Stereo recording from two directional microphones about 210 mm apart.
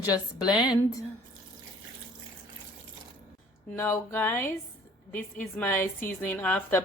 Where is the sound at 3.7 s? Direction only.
10° left (ahead or behind).